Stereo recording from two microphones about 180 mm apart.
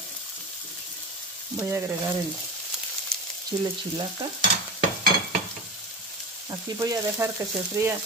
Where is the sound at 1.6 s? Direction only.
15° right (ahead or behind).